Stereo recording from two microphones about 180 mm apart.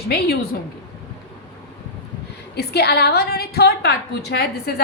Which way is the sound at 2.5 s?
65° left (ahead or behind).